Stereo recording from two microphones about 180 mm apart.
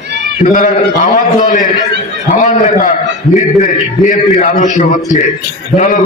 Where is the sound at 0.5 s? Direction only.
50° left (ahead or behind).